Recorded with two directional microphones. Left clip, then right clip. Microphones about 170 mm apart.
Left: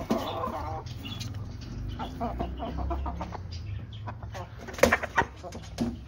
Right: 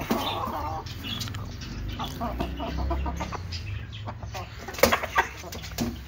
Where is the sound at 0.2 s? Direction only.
10° left (ahead or behind).